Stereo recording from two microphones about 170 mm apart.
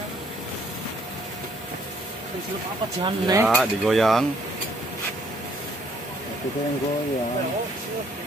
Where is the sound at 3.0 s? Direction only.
25° right (ahead or behind).